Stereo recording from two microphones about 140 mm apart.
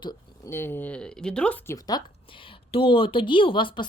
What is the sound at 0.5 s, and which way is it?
Speech, 15° left (ahead or behind).